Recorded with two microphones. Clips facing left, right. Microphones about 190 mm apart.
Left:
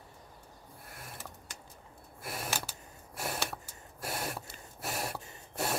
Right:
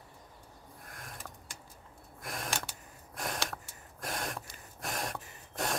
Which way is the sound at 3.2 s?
5° left (ahead or behind).